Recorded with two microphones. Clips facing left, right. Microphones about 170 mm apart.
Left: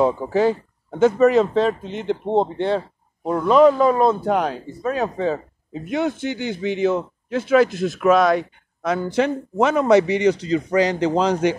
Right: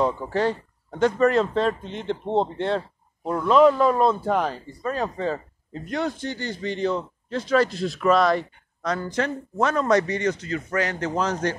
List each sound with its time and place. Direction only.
0.3 s speech: 5° left (ahead or behind)